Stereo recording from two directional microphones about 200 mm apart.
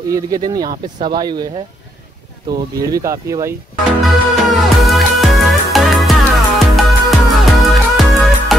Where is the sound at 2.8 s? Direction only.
15° right (ahead or behind).